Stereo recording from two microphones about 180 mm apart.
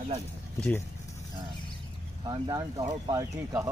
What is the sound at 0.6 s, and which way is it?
Speech, 5° left (ahead or behind).